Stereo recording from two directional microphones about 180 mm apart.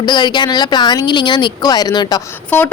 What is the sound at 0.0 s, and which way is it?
A woman's voice, 25° left (ahead or behind).